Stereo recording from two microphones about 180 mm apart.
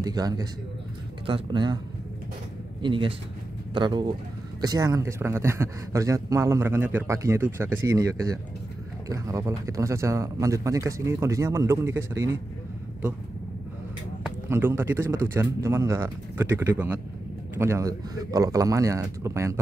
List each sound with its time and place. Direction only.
0.0 s speech: 20° right (ahead or behind)
2.8 s speech: 30° right (ahead or behind)
14.5 s speech: 10° right (ahead or behind)